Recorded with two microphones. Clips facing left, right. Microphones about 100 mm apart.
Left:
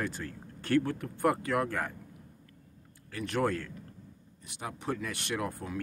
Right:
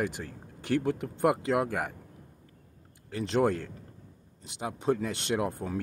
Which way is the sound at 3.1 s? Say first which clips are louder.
Right 4 dB; 25° right (ahead or behind).